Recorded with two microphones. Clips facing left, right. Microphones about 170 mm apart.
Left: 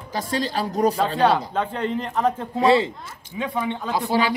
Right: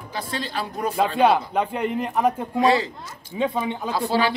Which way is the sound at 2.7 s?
25° left (ahead or behind).